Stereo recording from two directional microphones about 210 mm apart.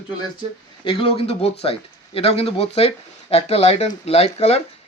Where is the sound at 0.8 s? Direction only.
25° left (ahead or behind).